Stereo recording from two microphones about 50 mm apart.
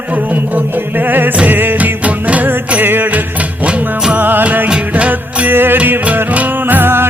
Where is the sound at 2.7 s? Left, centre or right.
Right.